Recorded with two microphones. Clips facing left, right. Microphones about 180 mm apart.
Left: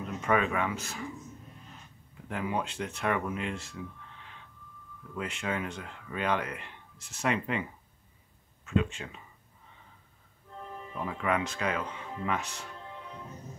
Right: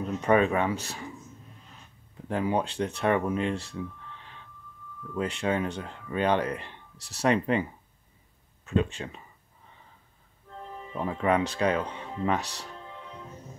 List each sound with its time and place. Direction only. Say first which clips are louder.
0.0 s speech: right 5 dB; 35° right (ahead or behind)
2.2 s speech: right 6 dB; 30° right (ahead or behind)
5.1 s speech: right 6 dB; 35° right (ahead or behind)
8.6 s speech: right 2 dB; 35° right (ahead or behind)
11.0 s speech: right 5 dB; 35° right (ahead or behind)